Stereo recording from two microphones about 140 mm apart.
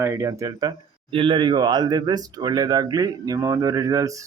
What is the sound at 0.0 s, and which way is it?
Speech, 20° right (ahead or behind).